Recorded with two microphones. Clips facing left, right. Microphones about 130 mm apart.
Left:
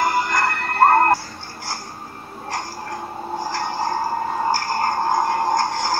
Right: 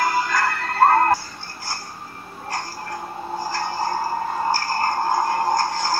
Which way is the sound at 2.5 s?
20° left (ahead or behind).